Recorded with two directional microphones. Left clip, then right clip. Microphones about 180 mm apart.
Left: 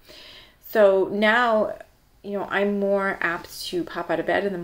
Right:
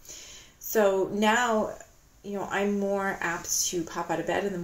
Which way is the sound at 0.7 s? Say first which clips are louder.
Left 6 dB; 30° left (ahead or behind).